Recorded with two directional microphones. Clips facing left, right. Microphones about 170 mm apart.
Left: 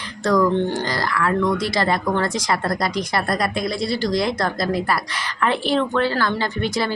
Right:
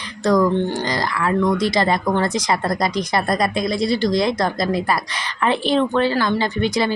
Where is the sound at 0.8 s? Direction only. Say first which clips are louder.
Right 1 dB; 20° right (ahead or behind).